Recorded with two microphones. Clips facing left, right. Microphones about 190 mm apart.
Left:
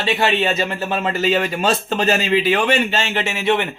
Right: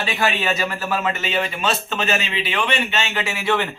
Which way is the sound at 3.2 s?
25° left (ahead or behind).